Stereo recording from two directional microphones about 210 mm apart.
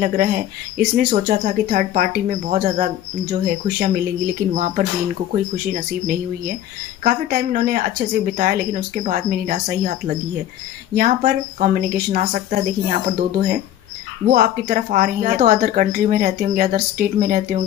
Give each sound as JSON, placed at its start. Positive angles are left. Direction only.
{"t": 0.0, "sound": "speech", "side_deg": -40}